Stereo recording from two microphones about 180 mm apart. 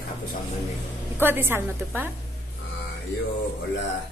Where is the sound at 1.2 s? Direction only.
10° right (ahead or behind).